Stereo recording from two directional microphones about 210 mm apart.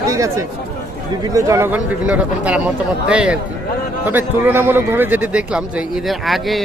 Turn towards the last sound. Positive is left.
turn(degrees=0)  # may be behind; listen again after turning